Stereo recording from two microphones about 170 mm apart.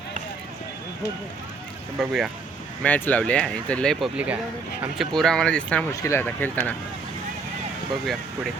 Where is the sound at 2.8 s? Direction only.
10° left (ahead or behind).